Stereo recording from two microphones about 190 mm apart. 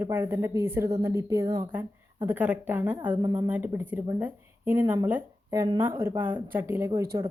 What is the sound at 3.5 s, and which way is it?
Speech, 10° right (ahead or behind).